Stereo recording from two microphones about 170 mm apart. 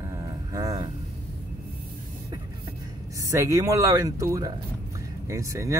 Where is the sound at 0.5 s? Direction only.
20° right (ahead or behind).